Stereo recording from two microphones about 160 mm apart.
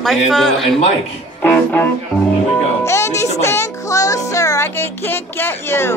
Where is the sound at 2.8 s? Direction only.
15° left (ahead or behind).